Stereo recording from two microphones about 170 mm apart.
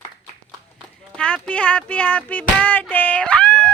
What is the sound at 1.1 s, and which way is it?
Speech, 5° left (ahead or behind).